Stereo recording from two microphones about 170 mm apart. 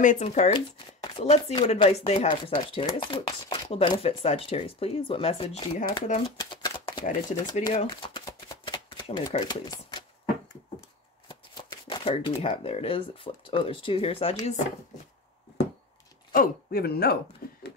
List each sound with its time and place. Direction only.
0.0 s speech: 45° left (ahead or behind)
6.5 s shuffling cards: 25° left (ahead or behind)
7.7 s chopping: 30° left (ahead or behind)
9.3 s speech: 25° left (ahead or behind)
11.2 s speech: 25° left (ahead or behind)
16.3 s speech: 65° left (ahead or behind)